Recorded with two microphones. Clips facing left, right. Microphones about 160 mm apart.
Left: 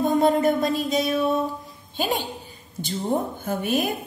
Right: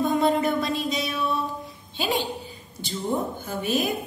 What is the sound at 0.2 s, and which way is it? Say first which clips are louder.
A woman's voice: left 3 dB; 45° left (ahead or behind).